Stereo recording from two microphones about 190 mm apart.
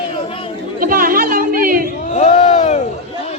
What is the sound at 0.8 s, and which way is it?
Chatter, 45° right (ahead or behind).